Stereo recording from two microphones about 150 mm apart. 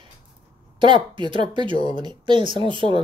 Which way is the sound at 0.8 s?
35° right (ahead or behind).